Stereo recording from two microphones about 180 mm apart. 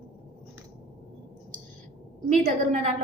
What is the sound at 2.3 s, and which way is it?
Speech, 40° right (ahead or behind).